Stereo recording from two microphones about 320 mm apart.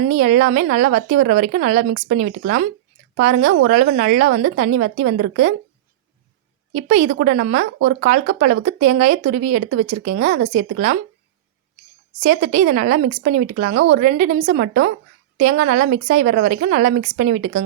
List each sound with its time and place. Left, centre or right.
0.1 s speech: right
6.7 s speech: right
12.2 s speech: right